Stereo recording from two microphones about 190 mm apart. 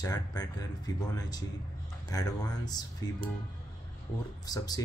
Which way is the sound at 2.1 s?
20° left (ahead or behind).